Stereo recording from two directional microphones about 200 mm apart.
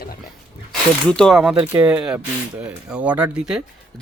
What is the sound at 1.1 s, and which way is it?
Speech, centre (ahead or behind).